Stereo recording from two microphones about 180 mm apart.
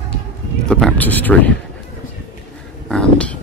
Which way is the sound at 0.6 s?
5° left (ahead or behind).